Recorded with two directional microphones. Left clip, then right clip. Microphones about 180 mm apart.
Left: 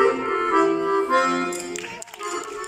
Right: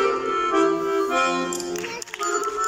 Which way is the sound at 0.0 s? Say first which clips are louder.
Left 1 dB; 30° left (ahead or behind).